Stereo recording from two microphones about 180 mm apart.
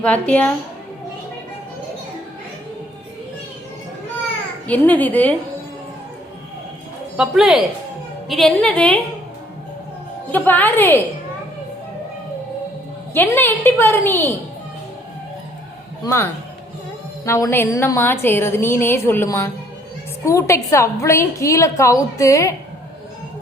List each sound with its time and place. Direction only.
0.0 s a woman's voice: 5° left (ahead or behind)
4.6 s a woman's voice: 10° left (ahead or behind)
7.2 s a woman's voice: centre (ahead or behind)
10.3 s a woman's voice: 10° left (ahead or behind)
13.1 s a woman's voice: 10° left (ahead or behind)
16.0 s a woman's voice: 15° left (ahead or behind)